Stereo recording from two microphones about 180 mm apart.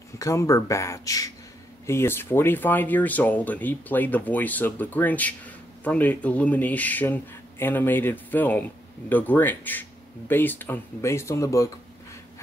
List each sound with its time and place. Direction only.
0.2 s speech: 15° left (ahead or behind)